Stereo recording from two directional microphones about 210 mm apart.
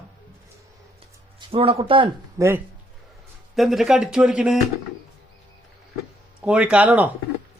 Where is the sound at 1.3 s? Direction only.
25° right (ahead or behind).